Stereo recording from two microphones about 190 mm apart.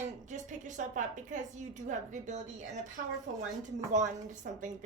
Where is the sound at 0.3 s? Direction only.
40° right (ahead or behind).